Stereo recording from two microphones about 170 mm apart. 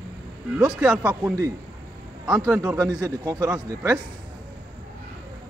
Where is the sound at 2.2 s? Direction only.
5° right (ahead or behind).